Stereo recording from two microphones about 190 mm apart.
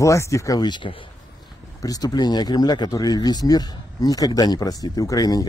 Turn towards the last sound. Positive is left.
turn(degrees=20)  # may be behind; listen again after turning